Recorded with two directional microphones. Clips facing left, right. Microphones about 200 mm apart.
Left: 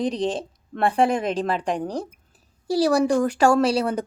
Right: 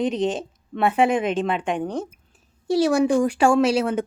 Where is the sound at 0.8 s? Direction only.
5° right (ahead or behind).